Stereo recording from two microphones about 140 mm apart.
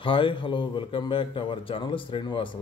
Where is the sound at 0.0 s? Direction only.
40° left (ahead or behind).